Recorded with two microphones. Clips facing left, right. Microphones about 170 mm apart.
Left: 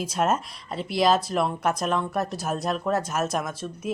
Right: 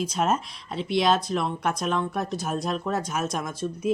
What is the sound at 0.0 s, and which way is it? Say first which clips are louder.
Speech: even; centre (ahead or behind).